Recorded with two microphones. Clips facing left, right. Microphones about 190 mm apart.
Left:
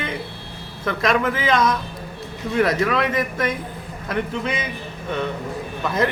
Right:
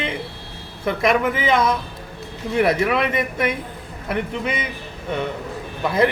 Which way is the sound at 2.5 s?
20° right (ahead or behind).